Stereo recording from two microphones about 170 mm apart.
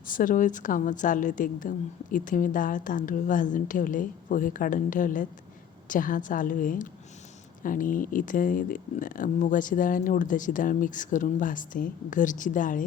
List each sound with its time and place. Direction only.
0.1 s a woman's voice: 50° left (ahead or behind)